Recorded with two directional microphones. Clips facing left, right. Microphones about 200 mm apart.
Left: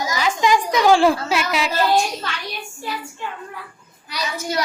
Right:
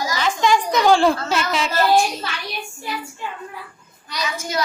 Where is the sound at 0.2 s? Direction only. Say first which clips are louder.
Even; 10° left (ahead or behind).